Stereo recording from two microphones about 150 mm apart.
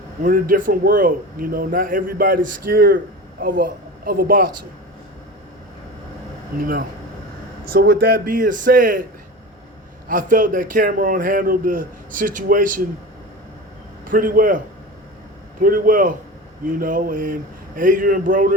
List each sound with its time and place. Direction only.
0.2 s a man's voice: 65° right (ahead or behind)
3.4 s a man's voice: 70° right (ahead or behind)
7.7 s a man's voice: 90° right; by 9.0 s 65° right (ahead or behind)
10.1 s a man's voice: 65° right (ahead or behind)
14.0 s a man's voice: 65° right (ahead or behind)
15.6 s a man's voice: 70° right (ahead or behind)